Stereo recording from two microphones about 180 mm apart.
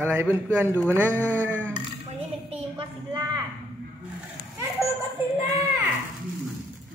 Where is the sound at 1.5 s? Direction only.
10° right (ahead or behind).